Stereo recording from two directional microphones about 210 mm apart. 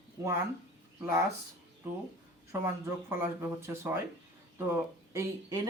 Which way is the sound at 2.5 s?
10° right (ahead or behind).